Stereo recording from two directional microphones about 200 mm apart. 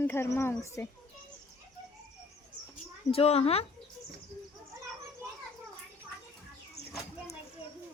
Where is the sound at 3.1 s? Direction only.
30° left (ahead or behind).